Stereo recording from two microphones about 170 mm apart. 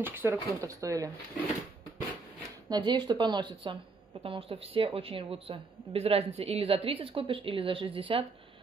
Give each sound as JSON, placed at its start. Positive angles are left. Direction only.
{"t": 0.0, "sound": "speech", "side_deg": -10}
{"t": 2.7, "sound": "a woman's voice", "side_deg": -25}